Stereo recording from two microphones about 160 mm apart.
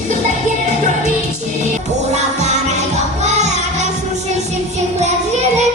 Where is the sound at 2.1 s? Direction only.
45° right (ahead or behind).